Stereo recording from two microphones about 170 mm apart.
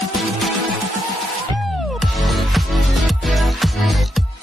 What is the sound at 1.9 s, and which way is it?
Music, centre (ahead or behind).